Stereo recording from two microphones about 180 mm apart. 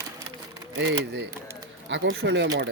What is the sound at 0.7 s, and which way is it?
Speech, 75° right (ahead or behind).